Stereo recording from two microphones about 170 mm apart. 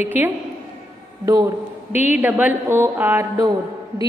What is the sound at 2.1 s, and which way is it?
A woman's voice, 10° right (ahead or behind).